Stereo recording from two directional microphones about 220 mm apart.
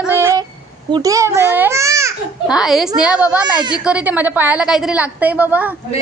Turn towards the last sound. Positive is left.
turn(degrees=-5)  # may be behind; listen again after turning